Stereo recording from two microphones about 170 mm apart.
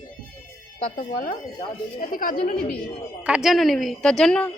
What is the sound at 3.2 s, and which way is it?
A woman's voice, 5° right (ahead or behind).